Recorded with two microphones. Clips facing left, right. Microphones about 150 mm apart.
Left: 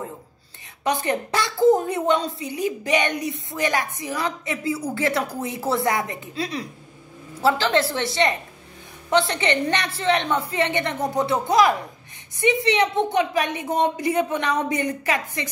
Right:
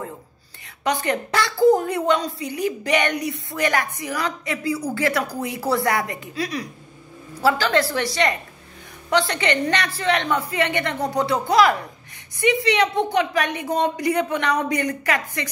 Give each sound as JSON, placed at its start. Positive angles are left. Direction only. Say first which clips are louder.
{"t": 0.8, "sound": "a woman's voice", "louder": "even", "side_deg": 30}